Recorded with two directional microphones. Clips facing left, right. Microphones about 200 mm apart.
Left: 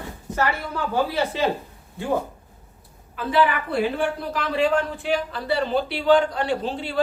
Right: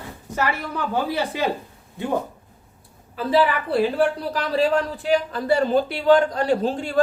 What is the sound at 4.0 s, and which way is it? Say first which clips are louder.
A man's voice: right 4 dB; 35° right (ahead or behind).